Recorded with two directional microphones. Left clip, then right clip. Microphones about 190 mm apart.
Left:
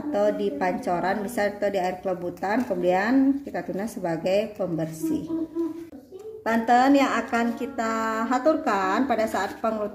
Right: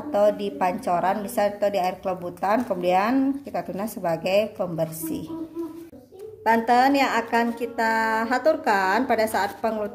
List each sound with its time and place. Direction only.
0.1 s a woman's voice: 20° right (ahead or behind)
6.4 s a woman's voice: 15° right (ahead or behind)